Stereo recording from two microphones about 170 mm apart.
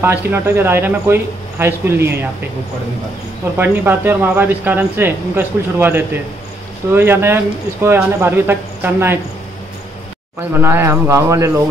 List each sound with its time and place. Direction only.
0.0 s speech: 10° right (ahead or behind)
3.5 s speech: 10° right (ahead or behind)
10.6 s speech: 15° right (ahead or behind)